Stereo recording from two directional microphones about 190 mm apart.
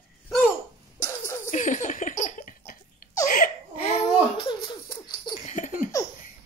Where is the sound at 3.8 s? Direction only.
30° left (ahead or behind).